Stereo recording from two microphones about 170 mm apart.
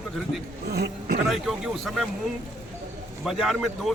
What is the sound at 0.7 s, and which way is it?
Speech, 65° right (ahead or behind).